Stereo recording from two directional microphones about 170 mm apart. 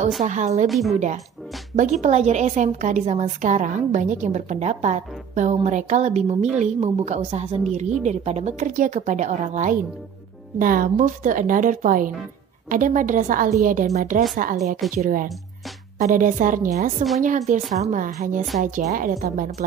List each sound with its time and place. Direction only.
0.2 s a woman's voice: 45° right (ahead or behind)
0.7 s a woman's voice: centre (ahead or behind)
0.9 s a woman's voice: 40° right (ahead or behind); by 19.5 s 60° right (ahead or behind)